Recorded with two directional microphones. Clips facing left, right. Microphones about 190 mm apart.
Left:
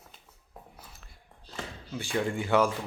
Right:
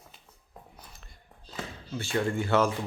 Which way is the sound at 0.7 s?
5° left (ahead or behind).